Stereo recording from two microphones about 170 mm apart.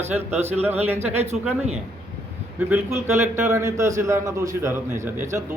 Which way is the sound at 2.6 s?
10° right (ahead or behind).